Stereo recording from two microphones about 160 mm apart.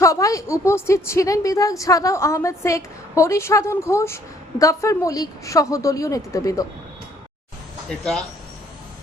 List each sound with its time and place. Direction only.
0.0 s a woman's voice: 20° left (ahead or behind)
7.9 s speech: 5° left (ahead or behind)